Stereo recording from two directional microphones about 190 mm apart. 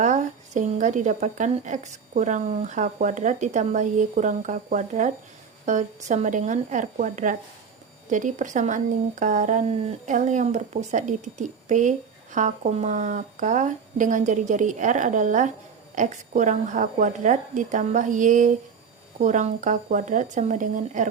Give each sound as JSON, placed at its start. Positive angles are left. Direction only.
{"t": 0.0, "sound": "speech", "side_deg": -40}